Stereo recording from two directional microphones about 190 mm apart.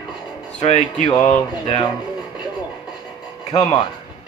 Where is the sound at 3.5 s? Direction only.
20° left (ahead or behind).